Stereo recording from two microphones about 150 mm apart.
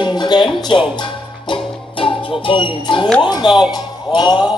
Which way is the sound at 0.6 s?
30° left (ahead or behind).